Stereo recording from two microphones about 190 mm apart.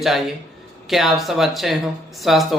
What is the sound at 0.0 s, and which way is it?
Speech, centre (ahead or behind).